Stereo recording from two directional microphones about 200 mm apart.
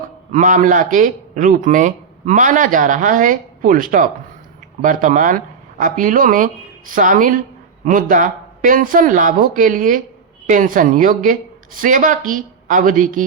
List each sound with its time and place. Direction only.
0.3 s a man's voice: 40° right (ahead or behind)